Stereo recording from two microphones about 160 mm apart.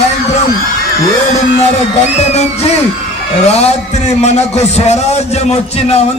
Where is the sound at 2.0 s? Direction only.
45° left (ahead or behind).